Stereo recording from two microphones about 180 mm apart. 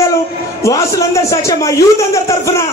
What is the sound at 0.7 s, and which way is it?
A man's voice, 15° left (ahead or behind).